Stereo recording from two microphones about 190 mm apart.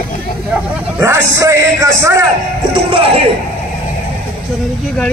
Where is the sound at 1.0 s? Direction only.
15° right (ahead or behind).